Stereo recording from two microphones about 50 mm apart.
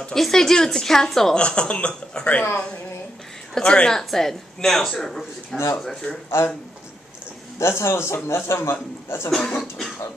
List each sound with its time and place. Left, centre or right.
0.1 s speech: centre
1.3 s speech: centre
3.5 s speech: centre
4.1 s speech: centre
6.3 s speech: left
7.5 s a man's voice: left
9.3 s speech: centre